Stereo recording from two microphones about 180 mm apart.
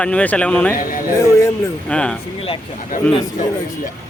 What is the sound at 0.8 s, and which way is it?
Music, 50° left (ahead or behind).